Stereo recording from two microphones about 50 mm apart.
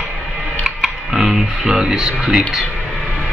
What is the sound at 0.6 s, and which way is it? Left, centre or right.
Speech, centre.